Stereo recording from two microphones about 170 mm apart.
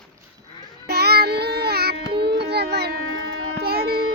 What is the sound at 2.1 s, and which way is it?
Music, 75° right (ahead or behind).